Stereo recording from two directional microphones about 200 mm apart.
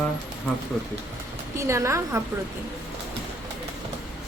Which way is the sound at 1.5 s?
15° right (ahead or behind).